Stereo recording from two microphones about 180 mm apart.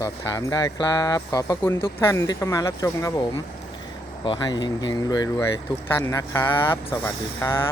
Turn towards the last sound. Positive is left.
turn(degrees=15)  # may be behind; listen again after turning